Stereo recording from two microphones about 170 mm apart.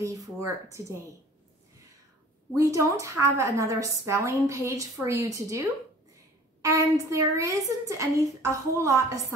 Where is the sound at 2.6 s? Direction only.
20° right (ahead or behind).